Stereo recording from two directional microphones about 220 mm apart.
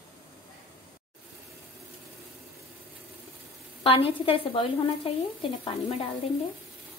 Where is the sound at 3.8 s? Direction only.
25° left (ahead or behind).